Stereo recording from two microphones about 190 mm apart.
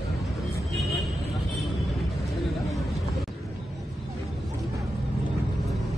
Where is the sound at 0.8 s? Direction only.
Centre (ahead or behind).